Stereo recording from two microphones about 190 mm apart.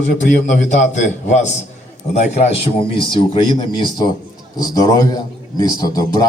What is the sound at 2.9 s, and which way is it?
A man's voice, 25° left (ahead or behind).